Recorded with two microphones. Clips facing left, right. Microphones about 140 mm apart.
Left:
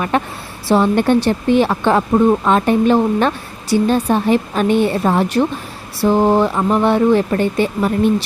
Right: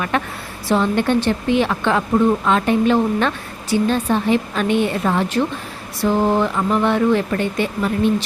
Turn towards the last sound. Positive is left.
turn(degrees=35)  # may be behind; listen again after turning